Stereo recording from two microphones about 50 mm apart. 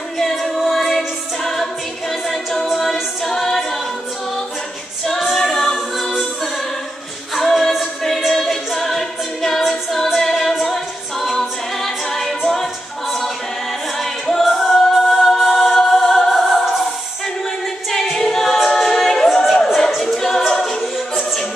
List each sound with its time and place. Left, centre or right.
0.2 s music: centre
2.2 s a capella: centre
5.4 s a capella: centre
13.9 s music: centre
15.0 s choir: centre
18.1 s a capella: centre